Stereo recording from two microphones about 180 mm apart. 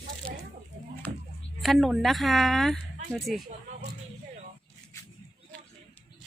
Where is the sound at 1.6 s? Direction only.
Centre (ahead or behind).